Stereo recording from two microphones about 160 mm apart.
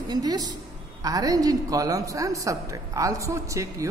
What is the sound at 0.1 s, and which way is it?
A woman's voice, 25° right (ahead or behind).